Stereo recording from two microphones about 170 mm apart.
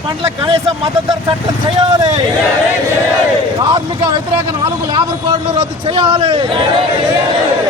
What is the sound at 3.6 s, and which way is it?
Speech, 25° right (ahead or behind).